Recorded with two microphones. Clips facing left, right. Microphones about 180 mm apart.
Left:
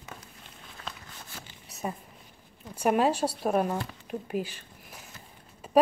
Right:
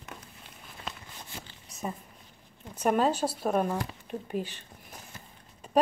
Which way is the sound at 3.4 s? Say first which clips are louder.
Left 1 dB; 10° left (ahead or behind).